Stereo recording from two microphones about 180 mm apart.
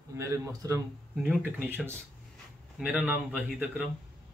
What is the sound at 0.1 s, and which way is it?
Speech, 15° right (ahead or behind).